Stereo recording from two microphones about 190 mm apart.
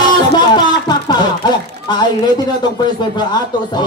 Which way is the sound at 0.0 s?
25° left (ahead or behind).